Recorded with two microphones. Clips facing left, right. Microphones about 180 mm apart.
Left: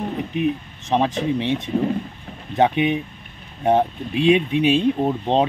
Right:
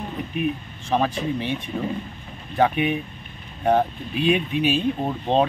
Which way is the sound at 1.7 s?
35° left (ahead or behind).